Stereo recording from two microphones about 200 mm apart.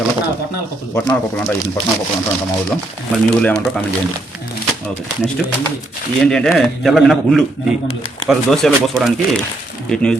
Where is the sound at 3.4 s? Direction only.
5° left (ahead or behind).